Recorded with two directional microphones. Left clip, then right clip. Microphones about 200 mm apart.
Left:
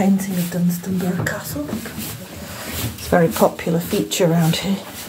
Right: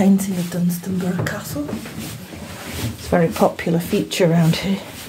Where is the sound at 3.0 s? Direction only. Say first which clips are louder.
Left 1 dB; 10° right (ahead or behind).